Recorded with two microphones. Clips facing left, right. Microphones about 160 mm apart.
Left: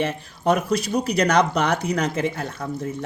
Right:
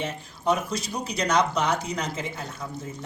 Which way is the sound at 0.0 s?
65° left (ahead or behind).